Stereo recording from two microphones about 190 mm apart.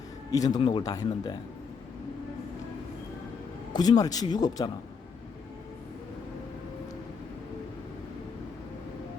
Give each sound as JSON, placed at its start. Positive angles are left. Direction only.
{"t": 0.3, "sound": "speech", "side_deg": 20}
{"t": 3.7, "sound": "speech", "side_deg": 20}